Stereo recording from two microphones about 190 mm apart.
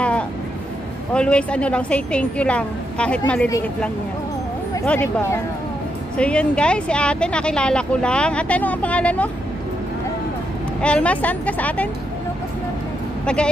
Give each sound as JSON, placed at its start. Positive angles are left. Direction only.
{"t": 1.1, "sound": "a woman's voice", "side_deg": 5}
{"t": 10.8, "sound": "a woman's voice", "side_deg": 5}
{"t": 13.2, "sound": "speech", "side_deg": 5}